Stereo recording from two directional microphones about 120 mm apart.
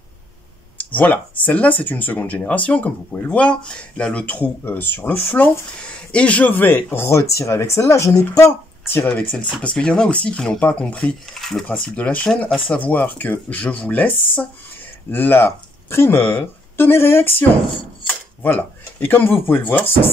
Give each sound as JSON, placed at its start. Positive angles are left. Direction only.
{"t": 0.7, "sound": "speech", "side_deg": 15}
{"t": 12.4, "sound": "speech", "side_deg": 0}
{"t": 12.7, "sound": "speech", "side_deg": 15}
{"t": 18.0, "sound": "a sound", "side_deg": 15}
{"t": 19.4, "sound": "speech", "side_deg": 15}